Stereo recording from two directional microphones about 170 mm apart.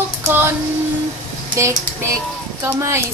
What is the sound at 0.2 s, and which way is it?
Child singing, 15° right (ahead or behind).